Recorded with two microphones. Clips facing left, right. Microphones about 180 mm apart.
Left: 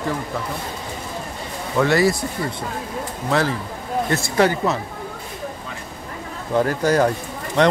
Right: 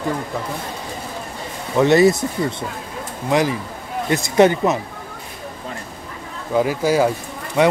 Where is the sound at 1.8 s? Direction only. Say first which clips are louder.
Right 4 dB; 20° right (ahead or behind).